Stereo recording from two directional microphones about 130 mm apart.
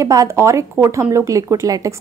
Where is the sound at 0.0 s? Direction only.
25° right (ahead or behind).